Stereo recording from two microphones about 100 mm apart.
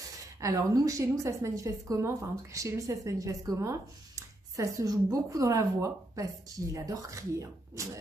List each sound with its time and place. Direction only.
0.4 s a woman's voice: 35° right (ahead or behind)